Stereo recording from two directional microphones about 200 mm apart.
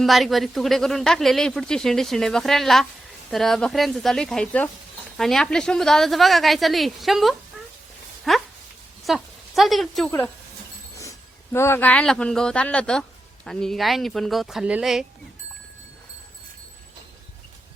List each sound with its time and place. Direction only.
0.0 s speech: centre (ahead or behind)
10.9 s speech: 15° left (ahead or behind); by 15.0 s 5° right (ahead or behind)